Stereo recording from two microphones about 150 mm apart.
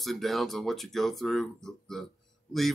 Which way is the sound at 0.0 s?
Centre (ahead or behind).